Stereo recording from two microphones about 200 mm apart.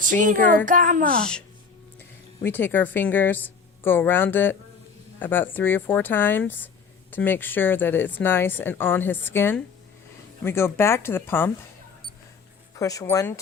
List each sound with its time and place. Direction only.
0.0 s speech: 40° right (ahead or behind)
2.0 s speech: 10° left (ahead or behind)
12.7 s speech: 15° left (ahead or behind)